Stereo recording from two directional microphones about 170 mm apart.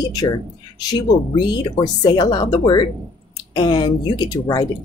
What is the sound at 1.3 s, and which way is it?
Speech, 30° left (ahead or behind).